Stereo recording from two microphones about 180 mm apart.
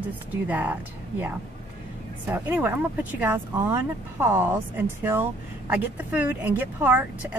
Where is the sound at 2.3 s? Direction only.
10° right (ahead or behind).